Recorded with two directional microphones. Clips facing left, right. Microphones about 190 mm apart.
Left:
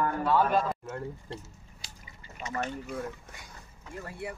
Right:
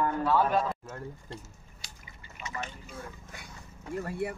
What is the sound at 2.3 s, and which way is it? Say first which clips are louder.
Liquid: left 5 dB; 35° left (ahead or behind).